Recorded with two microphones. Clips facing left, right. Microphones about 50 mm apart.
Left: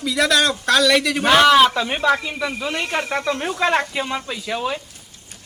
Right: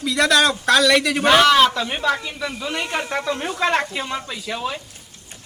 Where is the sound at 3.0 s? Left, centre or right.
Centre.